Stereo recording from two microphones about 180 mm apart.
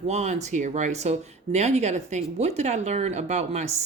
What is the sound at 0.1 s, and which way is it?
Speech, 40° right (ahead or behind).